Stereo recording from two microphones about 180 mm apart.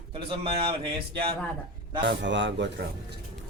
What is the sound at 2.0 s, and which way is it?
Speech, 80° right.